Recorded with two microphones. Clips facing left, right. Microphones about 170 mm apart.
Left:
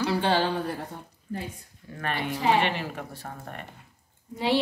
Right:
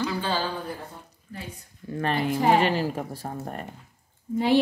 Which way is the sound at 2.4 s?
40° right (ahead or behind).